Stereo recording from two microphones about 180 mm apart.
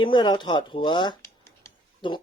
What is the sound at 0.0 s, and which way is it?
Speech, 25° left (ahead or behind).